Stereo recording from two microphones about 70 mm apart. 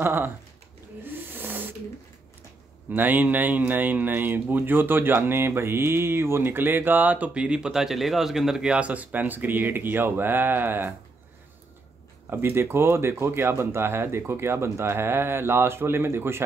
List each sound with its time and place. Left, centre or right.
0.0 s speech: right
1.3 s a sound: right
2.9 s speech: right
12.3 s speech: right